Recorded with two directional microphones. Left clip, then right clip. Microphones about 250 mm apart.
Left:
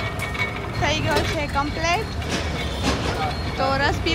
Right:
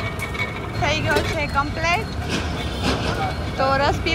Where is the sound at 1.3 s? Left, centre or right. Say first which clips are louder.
Right 2 dB; centre.